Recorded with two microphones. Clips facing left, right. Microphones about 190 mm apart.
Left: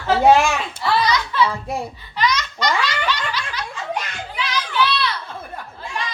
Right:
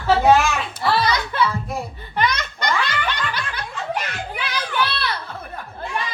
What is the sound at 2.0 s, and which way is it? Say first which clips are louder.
Laughter: right 1 dB; 55° right (ahead or behind).